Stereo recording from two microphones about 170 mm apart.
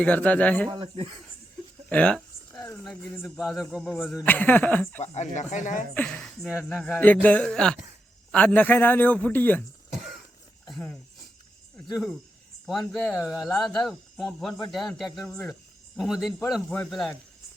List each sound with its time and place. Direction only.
0.0 s a man's voice: 10° left (ahead or behind)
0.7 s speech: 30° right (ahead or behind)
1.9 s a sound: 5° left (ahead or behind)
2.8 s speech: centre (ahead or behind)
4.3 s a man's voice: 10° left (ahead or behind)
5.1 s speech: 45° left (ahead or behind)
5.9 s speech: 5° left (ahead or behind)
7.0 s a man's voice: 10° left (ahead or behind)
10.7 s speech: 5° left (ahead or behind)
12.6 s speech: centre (ahead or behind)